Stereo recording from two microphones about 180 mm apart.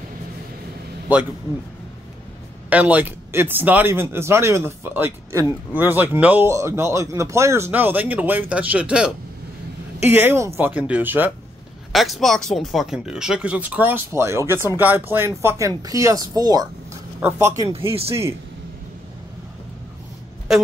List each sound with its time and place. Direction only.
2.7 s speech: 10° right (ahead or behind)
17.6 s speech: 30° right (ahead or behind)